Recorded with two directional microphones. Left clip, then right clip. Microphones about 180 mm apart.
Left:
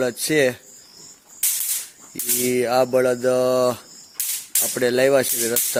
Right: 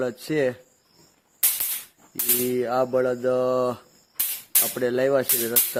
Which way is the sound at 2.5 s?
15° left (ahead or behind).